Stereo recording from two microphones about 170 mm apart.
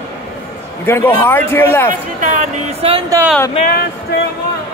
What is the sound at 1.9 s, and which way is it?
Speech, 50° right (ahead or behind).